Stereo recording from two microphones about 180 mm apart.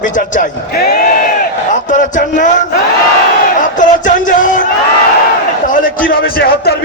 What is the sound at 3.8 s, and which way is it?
Music, 45° left (ahead or behind).